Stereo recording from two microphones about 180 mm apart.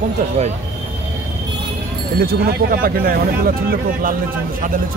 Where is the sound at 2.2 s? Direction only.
55° right (ahead or behind).